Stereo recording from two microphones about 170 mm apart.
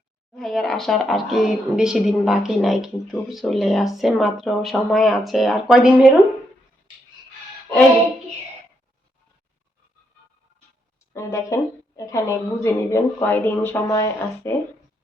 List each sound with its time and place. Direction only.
0.3 s speech: centre (ahead or behind)
11.1 s a woman's voice: 15° left (ahead or behind)